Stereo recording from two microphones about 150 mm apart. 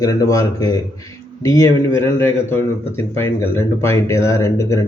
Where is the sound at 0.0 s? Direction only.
25° left (ahead or behind).